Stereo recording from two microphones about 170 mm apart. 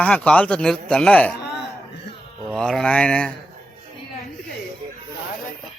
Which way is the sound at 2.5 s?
5° left (ahead or behind).